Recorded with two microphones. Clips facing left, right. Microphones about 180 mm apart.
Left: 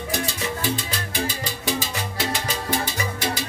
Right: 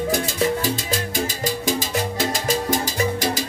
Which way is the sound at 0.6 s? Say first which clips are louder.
Right 3 dB; 45° right (ahead or behind).